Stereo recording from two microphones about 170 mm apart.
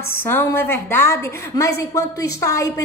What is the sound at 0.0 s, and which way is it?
A woman's voice, 15° left (ahead or behind).